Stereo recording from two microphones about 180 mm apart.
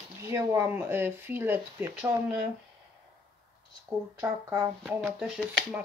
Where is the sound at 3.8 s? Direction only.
15° right (ahead or behind).